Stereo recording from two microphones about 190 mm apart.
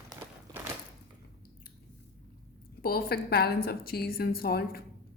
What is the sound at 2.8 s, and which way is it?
A woman's voice, 55° left (ahead or behind).